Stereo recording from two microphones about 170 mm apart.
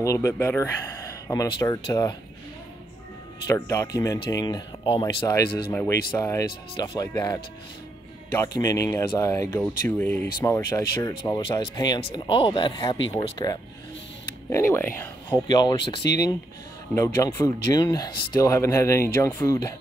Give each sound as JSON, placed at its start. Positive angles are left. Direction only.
{"t": 0.0, "sound": "speech", "side_deg": 20}
{"t": 3.4, "sound": "speech", "side_deg": 15}
{"t": 15.2, "sound": "speech", "side_deg": 25}